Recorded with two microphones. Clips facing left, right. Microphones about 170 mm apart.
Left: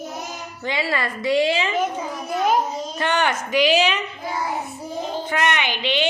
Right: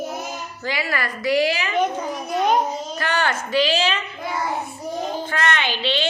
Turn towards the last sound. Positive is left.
turn(degrees=15)  # may be behind; listen again after turning